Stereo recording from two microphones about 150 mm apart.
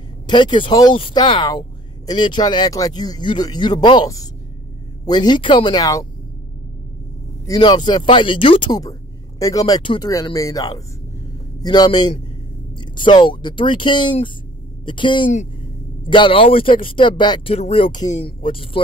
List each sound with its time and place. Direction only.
0.3 s speech: 30° left (ahead or behind)
7.4 s speech: 25° left (ahead or behind)